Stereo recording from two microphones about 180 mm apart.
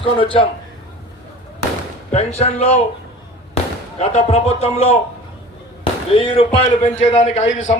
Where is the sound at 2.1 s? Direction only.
35° left (ahead or behind).